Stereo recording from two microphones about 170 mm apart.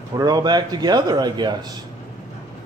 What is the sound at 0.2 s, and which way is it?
Speech, 25° right (ahead or behind).